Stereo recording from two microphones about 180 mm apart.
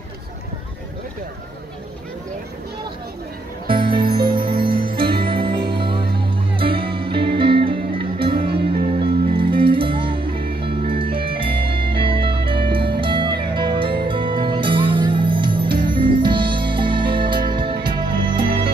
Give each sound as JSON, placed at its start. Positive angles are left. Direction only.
{"t": 3.6, "sound": "music", "side_deg": -30}
{"t": 8.5, "sound": "music", "side_deg": -60}
{"t": 9.0, "sound": "music", "side_deg": -30}